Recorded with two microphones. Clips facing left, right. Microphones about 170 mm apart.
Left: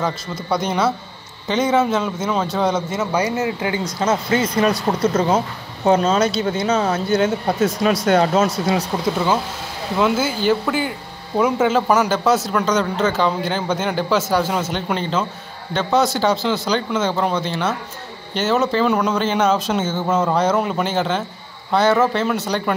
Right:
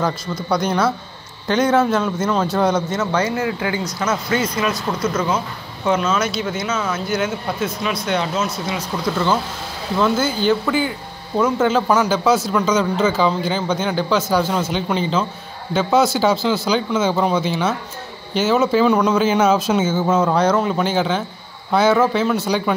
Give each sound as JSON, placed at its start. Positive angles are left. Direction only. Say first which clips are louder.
{"t": 0.0, "sound": "speech", "louder": "right 2 dB", "side_deg": 0}
{"t": 3.0, "sound": "speech", "louder": "even", "side_deg": 15}
{"t": 8.9, "sound": "speech", "louder": "left 2 dB", "side_deg": 25}
{"t": 9.9, "sound": "speech", "louder": "even", "side_deg": 5}